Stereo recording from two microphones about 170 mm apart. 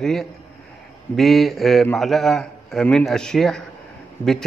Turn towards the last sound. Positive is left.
turn(degrees=15)  # may be behind; listen again after turning